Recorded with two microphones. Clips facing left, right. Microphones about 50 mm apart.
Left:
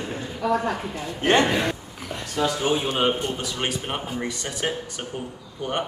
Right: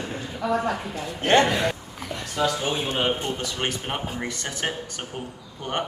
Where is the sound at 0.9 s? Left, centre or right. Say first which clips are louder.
Right 1 dB; left; by 4.0 s centre.